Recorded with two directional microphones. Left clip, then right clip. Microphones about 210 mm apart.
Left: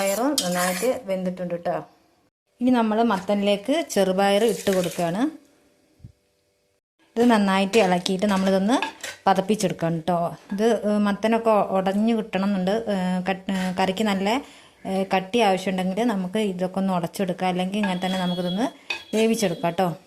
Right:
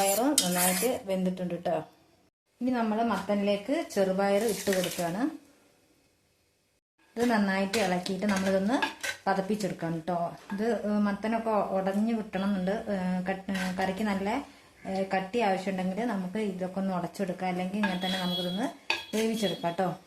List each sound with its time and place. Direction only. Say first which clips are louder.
0.0 s speech: left 3 dB; centre (ahead or behind)
2.6 s a woman's voice: left 8 dB; 45° left (ahead or behind)
7.1 s a woman's voice: left 8 dB; 35° left (ahead or behind)